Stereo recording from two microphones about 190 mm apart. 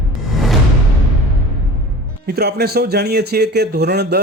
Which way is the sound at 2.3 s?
60° right (ahead or behind).